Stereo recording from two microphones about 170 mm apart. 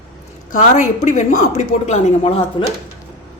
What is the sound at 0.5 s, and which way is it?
A woman's voice, 45° left (ahead or behind).